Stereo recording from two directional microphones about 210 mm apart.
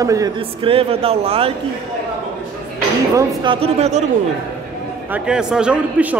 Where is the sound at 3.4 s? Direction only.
25° right (ahead or behind).